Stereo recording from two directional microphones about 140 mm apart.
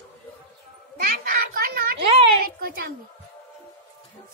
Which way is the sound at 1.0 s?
90° right.